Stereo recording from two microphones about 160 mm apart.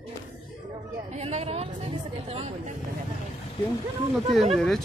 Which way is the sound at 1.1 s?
40° right (ahead or behind).